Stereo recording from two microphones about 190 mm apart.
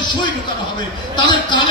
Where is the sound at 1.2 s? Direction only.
25° left (ahead or behind).